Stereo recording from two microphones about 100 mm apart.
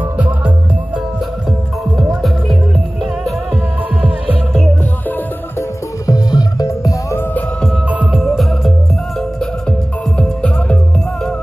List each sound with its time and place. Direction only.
2.0 s music: centre (ahead or behind)
6.0 s music: 40° left (ahead or behind)
7.9 s music: 15° right (ahead or behind)
8.2 s music: centre (ahead or behind)